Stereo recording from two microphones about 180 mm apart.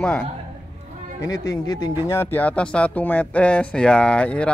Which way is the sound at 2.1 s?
10° left (ahead or behind).